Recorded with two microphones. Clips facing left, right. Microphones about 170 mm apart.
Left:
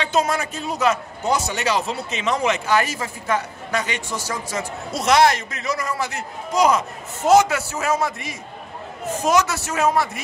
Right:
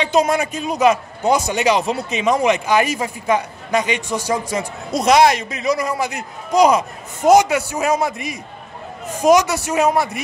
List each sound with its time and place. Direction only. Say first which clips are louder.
0.0 s a man's voice: right 5 dB; 15° right (ahead or behind)